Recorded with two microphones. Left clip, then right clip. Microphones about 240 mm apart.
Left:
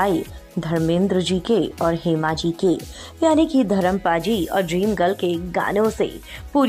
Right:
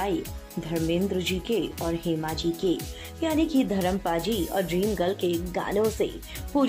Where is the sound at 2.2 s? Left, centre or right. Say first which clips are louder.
Left 7 dB; left.